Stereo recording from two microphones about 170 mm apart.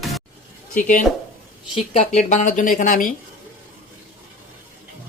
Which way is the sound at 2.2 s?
45° left (ahead or behind).